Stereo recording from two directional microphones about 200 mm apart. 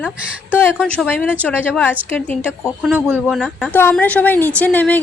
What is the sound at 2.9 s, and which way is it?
Speech, 10° right (ahead or behind).